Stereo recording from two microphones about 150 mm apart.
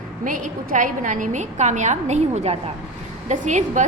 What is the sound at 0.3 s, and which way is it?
A woman's voice, 60° right (ahead or behind).